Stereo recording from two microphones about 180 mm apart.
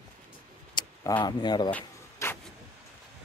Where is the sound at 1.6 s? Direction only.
10° left (ahead or behind).